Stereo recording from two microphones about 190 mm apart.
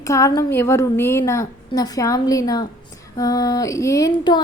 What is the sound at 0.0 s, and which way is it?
A woman's voice, 15° left (ahead or behind).